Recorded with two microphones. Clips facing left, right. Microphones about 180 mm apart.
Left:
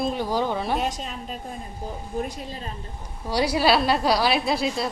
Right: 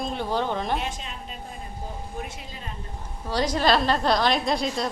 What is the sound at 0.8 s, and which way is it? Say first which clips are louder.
A woman's voice: left 5 dB; 40° left (ahead or behind).